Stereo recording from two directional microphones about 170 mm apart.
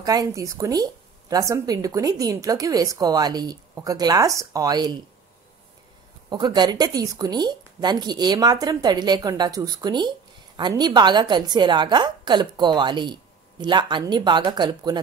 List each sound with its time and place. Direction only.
0.0 s speech: 20° right (ahead or behind)
6.3 s speech: 25° right (ahead or behind)